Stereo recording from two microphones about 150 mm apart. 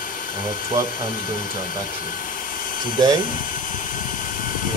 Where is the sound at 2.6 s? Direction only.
65° left (ahead or behind).